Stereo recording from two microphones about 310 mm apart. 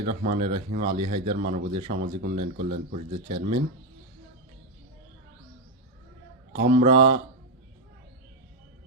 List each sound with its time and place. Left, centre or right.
0.0 s speech: right
6.7 s speech: centre